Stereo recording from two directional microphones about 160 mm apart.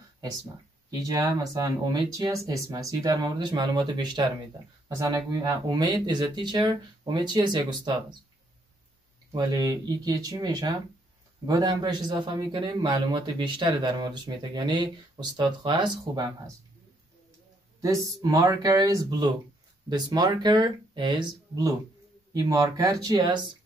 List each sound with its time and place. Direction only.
0.8 s a man's voice: 20° right (ahead or behind)
9.3 s a man's voice: 25° right (ahead or behind)
17.8 s a man's voice: 20° right (ahead or behind)